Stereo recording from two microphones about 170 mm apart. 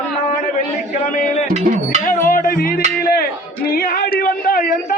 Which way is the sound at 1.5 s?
45° right (ahead or behind).